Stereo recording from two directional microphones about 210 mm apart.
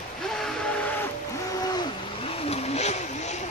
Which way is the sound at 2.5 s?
30° left (ahead or behind).